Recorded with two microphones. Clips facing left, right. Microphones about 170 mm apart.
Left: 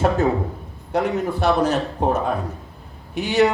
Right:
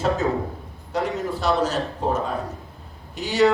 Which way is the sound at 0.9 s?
55° left (ahead or behind).